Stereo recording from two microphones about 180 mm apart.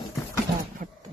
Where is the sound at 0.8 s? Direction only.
45° right (ahead or behind).